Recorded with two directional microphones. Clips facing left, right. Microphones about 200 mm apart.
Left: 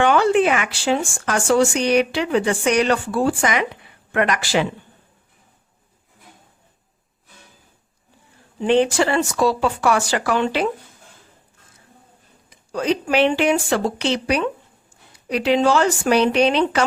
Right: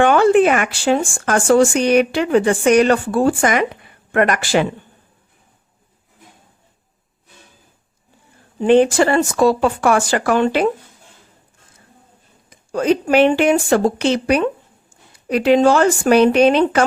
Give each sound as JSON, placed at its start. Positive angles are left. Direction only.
{"t": 0.0, "sound": "speech", "side_deg": -50}
{"t": 8.6, "sound": "speech", "side_deg": -50}
{"t": 12.5, "sound": "speech", "side_deg": -50}